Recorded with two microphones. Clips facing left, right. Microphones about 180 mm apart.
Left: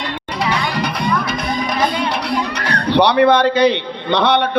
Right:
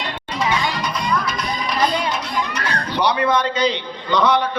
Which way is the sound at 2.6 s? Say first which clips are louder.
Left 10 dB; 65° left (ahead or behind).